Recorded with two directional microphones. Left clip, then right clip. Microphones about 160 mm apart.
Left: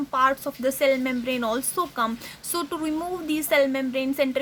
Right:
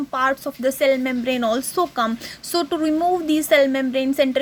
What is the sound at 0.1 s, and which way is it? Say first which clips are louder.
Speech: even; 20° right (ahead or behind).